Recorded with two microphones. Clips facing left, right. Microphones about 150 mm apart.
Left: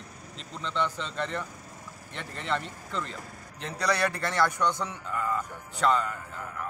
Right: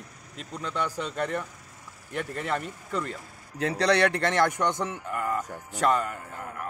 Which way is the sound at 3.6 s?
70° right (ahead or behind).